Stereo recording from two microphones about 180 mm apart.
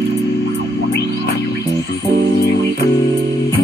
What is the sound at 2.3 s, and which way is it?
Music, 65° left (ahead or behind).